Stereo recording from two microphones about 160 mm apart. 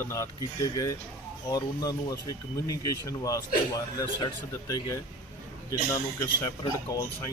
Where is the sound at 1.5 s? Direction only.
25° left (ahead or behind).